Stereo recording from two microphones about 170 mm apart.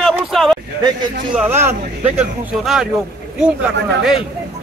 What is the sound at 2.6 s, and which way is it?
Speech, centre (ahead or behind).